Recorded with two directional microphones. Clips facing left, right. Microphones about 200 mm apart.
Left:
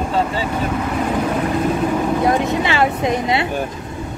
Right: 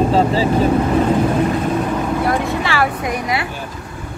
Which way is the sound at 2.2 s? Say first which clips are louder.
Left 2 dB; 20° left (ahead or behind).